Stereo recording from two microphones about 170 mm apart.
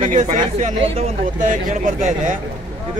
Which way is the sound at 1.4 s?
50° right (ahead or behind).